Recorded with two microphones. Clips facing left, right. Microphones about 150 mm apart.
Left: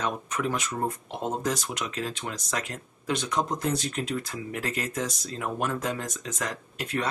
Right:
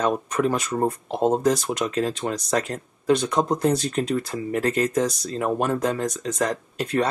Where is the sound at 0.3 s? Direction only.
40° right (ahead or behind).